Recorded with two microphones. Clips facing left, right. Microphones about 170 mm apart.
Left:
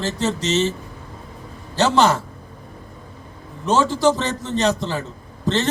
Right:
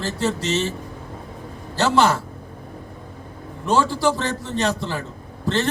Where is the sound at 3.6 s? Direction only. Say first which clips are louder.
Left 2 dB; 20° left (ahead or behind).